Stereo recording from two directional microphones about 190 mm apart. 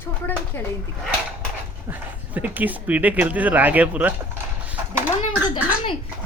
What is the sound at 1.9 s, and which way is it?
Speech, 10° right (ahead or behind).